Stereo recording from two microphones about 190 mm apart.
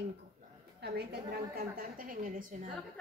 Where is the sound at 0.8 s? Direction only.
55° right (ahead or behind).